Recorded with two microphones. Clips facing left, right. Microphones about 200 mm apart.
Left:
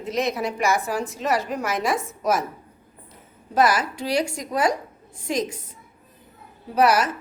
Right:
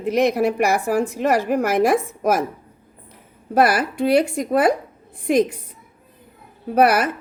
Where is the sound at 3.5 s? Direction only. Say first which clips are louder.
Right 3 dB; 60° right (ahead or behind).